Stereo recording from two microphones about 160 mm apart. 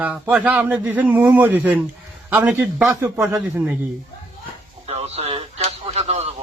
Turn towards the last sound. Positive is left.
turn(degrees=-40)  # may be behind; listen again after turning